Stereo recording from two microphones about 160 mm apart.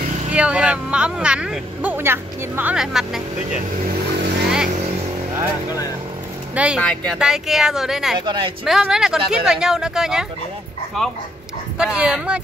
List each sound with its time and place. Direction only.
0.3 s speech: 5° right (ahead or behind)
6.5 s speech: 10° right (ahead or behind)
6.8 s speech: 10° left (ahead or behind)
7.2 s speech: 5° right (ahead or behind)
8.3 s a woman's voice: 30° right (ahead or behind)
8.6 s speech: 5° right (ahead or behind)